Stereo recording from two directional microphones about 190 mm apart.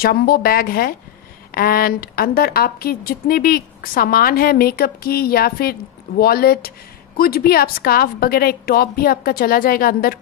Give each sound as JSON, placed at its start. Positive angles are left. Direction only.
{"t": 0.0, "sound": "a woman's voice", "side_deg": 50}